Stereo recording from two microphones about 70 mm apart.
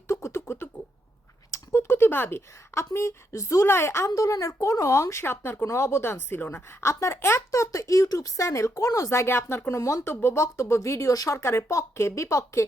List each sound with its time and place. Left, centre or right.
0.1 s a sound: left
1.5 s speech: left
4.1 s speech: left
5.2 s speech: left